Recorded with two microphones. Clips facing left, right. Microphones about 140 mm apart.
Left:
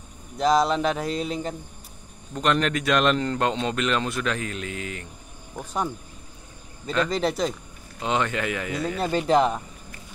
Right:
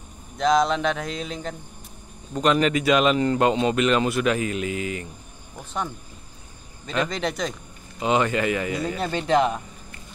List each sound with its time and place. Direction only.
0.4 s speech: 5° left (ahead or behind)
7.2 s speech: 5° left (ahead or behind)